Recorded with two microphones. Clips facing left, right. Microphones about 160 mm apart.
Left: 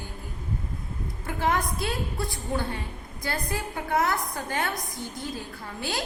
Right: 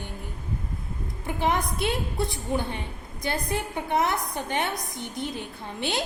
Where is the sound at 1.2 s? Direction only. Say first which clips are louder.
Right 1 dB; 20° right (ahead or behind).